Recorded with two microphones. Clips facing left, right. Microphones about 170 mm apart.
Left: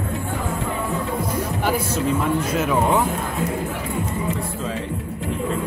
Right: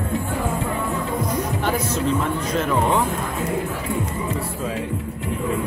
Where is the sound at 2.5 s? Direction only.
5° left (ahead or behind).